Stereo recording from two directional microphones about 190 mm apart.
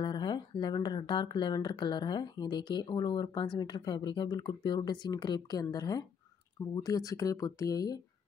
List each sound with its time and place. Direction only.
0.0 s speech: 25° left (ahead or behind)